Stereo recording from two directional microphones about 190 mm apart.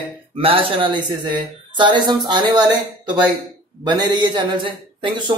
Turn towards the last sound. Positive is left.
turn(degrees=-25)  # may be behind; listen again after turning